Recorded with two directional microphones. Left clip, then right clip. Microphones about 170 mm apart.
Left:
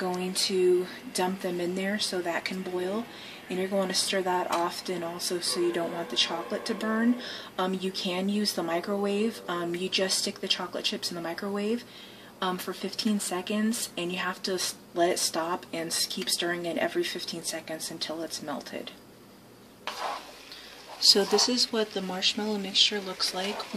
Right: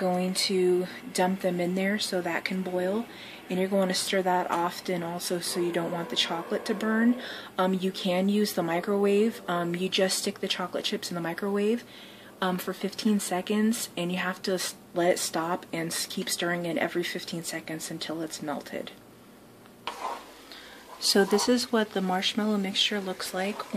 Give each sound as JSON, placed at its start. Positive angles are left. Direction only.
{"t": 1.1, "sound": "speech", "side_deg": -45}
{"t": 21.1, "sound": "speech", "side_deg": -45}